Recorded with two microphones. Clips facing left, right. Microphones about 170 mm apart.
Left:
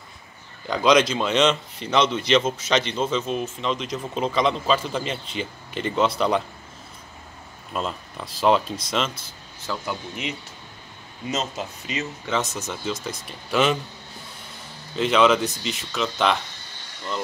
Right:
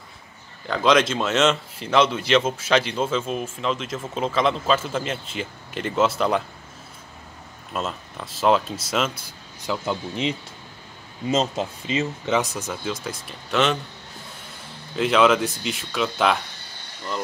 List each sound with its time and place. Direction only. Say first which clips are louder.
0.7 s speech: left 1 dB; centre (ahead or behind)
7.7 s speech: even; 5° right (ahead or behind)
9.8 s speech: right 5 dB; 30° right (ahead or behind)
12.3 s speech: right 1 dB; 10° right (ahead or behind)
15.0 s speech: even; 5° right (ahead or behind)